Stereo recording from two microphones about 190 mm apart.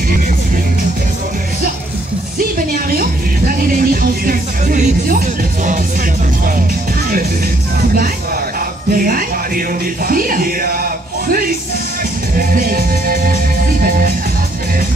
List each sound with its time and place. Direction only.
2.7 s music: 50° right (ahead or behind)
8.9 s music: 50° right (ahead or behind)
12.4 s music: 50° right (ahead or behind)